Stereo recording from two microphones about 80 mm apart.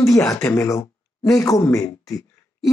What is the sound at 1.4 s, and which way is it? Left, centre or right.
Speech, left.